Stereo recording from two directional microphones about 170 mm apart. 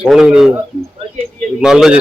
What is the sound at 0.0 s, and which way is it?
Speech, 5° right (ahead or behind).